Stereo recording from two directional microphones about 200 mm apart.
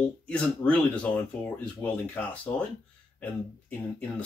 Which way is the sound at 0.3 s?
5° left (ahead or behind).